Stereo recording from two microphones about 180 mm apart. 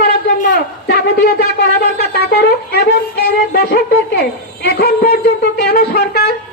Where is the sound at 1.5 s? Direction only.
60° left (ahead or behind).